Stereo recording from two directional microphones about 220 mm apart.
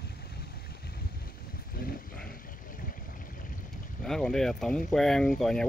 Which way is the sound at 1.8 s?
40° left (ahead or behind).